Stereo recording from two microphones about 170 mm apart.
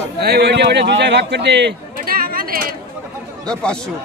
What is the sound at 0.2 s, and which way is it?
Speech, 75° right (ahead or behind).